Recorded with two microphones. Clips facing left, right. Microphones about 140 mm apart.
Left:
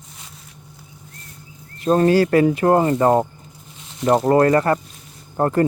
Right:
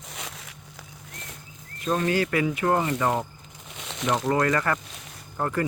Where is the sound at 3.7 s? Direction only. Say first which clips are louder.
Left 6 dB; 80° right.